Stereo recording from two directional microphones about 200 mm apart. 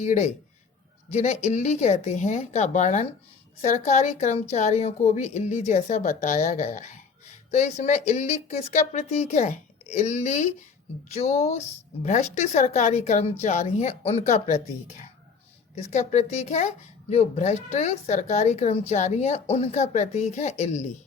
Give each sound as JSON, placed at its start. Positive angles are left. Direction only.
{"t": 0.0, "sound": "speech", "side_deg": 35}
{"t": 15.7, "sound": "speech", "side_deg": 35}